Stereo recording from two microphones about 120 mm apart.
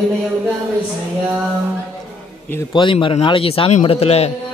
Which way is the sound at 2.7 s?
45° left (ahead or behind).